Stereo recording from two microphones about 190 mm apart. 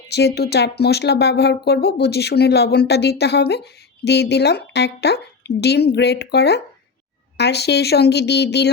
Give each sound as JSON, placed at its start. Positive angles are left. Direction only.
{"t": 0.3, "sound": "speech", "side_deg": 60}